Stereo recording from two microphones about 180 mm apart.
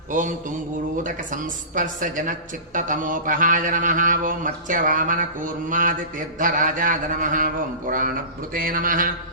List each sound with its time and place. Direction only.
0.1 s mantra: 45° right (ahead or behind)